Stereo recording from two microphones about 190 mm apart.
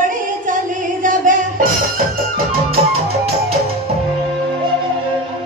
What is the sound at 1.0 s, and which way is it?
Music, 45° right (ahead or behind).